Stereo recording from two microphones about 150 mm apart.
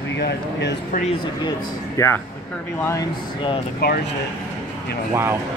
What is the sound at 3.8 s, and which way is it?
Speech, 90° left.